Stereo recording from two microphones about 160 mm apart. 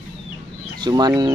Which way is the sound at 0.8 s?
25° right (ahead or behind).